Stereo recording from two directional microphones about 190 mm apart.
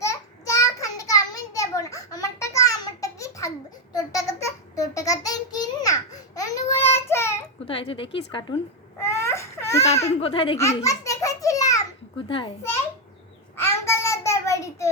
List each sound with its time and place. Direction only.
0.0 s a sound: 15° left (ahead or behind)
3.9 s child singing: 20° left (ahead or behind)
7.7 s a woman's voice: 30° left (ahead or behind)
9.0 s baby cry: 15° left (ahead or behind)
10.2 s a woman's voice: 30° left (ahead or behind)
10.6 s a sound: 15° left (ahead or behind)
12.3 s a woman's voice: 25° left (ahead or behind)
13.6 s child singing: 15° left (ahead or behind)